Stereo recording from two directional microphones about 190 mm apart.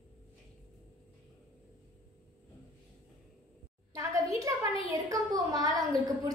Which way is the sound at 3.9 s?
15° right (ahead or behind).